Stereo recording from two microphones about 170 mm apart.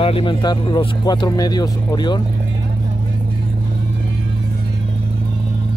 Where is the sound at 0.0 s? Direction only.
30° left (ahead or behind).